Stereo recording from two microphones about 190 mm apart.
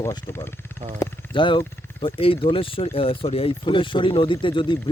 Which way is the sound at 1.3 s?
25° left (ahead or behind).